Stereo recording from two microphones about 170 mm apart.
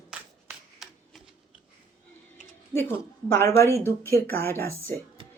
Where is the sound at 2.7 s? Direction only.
15° left (ahead or behind).